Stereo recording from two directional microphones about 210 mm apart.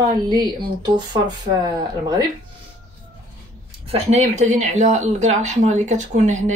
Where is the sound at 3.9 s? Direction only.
30° right (ahead or behind).